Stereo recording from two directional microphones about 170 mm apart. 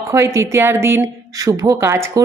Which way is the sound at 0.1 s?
15° right (ahead or behind).